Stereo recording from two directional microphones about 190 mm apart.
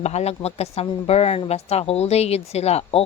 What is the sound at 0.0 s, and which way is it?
A woman's voice, 35° left (ahead or behind).